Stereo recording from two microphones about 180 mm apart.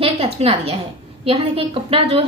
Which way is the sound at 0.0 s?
35° right (ahead or behind).